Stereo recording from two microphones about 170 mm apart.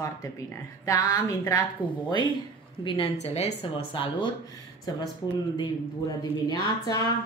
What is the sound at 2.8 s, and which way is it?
Speech, 30° left (ahead or behind).